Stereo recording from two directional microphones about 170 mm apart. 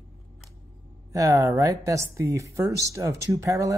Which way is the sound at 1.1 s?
20° right (ahead or behind).